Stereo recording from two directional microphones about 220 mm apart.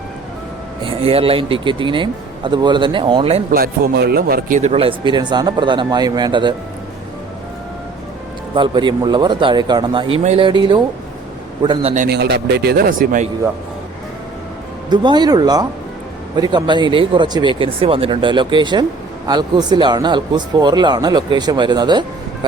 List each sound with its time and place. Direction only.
0.9 s speech: 25° right (ahead or behind)
3.5 s speech: 45° right (ahead or behind); by 6.5 s 20° right (ahead or behind)
8.5 s speech: 20° right (ahead or behind)
12.0 s a man's voice: 50° right (ahead or behind)
14.8 s speech: 20° right (ahead or behind)